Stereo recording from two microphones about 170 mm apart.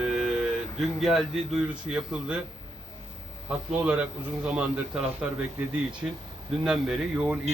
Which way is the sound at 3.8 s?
10° right (ahead or behind).